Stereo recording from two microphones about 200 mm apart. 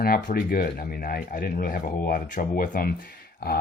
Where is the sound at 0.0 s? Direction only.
45° left (ahead or behind).